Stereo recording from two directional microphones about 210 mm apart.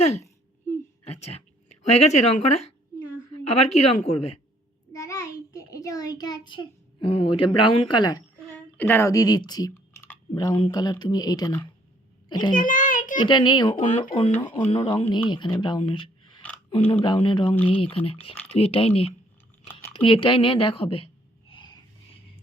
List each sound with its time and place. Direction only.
0.0 s a woman's voice: 30° left (ahead or behind)
4.9 s child singing: 15° left (ahead or behind)
8.5 s speech: 10° left (ahead or behind)
12.5 s a sound: 40° left (ahead or behind)
13.1 s speech: 20° left (ahead or behind)
19.9 s a sound: 25° left (ahead or behind)